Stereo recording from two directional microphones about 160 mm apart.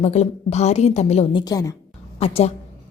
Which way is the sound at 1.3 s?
25° left (ahead or behind).